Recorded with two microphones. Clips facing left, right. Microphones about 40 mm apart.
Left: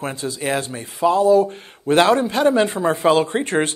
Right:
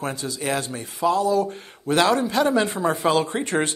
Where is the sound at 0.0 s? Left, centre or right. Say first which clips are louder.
Left 3 dB; left.